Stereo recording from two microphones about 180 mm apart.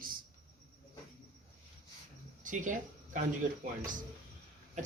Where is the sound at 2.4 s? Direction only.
45° right (ahead or behind).